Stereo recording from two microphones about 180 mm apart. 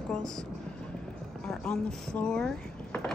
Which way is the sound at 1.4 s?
5° left (ahead or behind).